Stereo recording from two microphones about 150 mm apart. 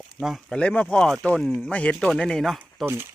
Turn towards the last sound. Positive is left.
turn(degrees=-15)  # may be behind; listen again after turning